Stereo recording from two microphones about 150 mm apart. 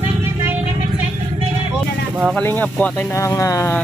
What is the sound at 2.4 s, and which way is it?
Speech, 10° left (ahead or behind).